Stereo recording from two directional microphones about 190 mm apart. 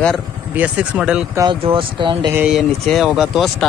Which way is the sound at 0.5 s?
5° right (ahead or behind).